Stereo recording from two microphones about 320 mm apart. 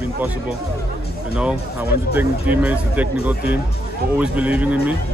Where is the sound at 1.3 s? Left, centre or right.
Centre.